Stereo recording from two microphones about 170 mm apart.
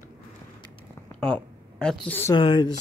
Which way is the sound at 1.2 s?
5° left (ahead or behind).